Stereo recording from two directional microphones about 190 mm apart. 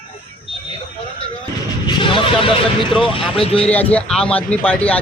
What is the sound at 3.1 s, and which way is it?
Speech, 30° left (ahead or behind).